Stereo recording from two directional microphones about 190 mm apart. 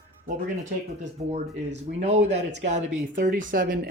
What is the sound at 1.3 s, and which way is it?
Speech, 35° right (ahead or behind).